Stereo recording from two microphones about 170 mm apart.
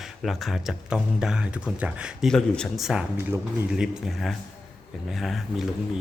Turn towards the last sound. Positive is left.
turn(degrees=0)  # may be behind; listen again after turning